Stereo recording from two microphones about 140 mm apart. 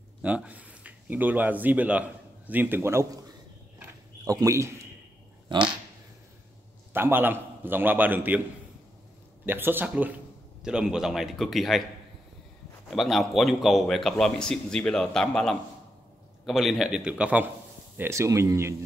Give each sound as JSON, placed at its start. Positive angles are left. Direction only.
{"t": 0.2, "sound": "speech", "side_deg": -10}
{"t": 3.8, "sound": "a sound", "side_deg": -25}
{"t": 5.5, "sound": "dog", "side_deg": -35}
{"t": 6.9, "sound": "a man's voice", "side_deg": -15}
{"t": 9.5, "sound": "a man's voice", "side_deg": -15}
{"t": 12.8, "sound": "a man's voice", "side_deg": 0}